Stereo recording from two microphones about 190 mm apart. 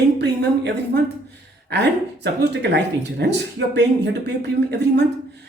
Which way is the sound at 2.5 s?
65° right (ahead or behind).